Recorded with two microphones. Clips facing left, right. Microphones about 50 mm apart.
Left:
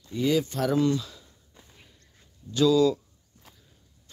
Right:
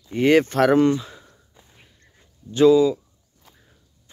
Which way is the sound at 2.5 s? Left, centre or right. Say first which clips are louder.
Right 7 dB; right.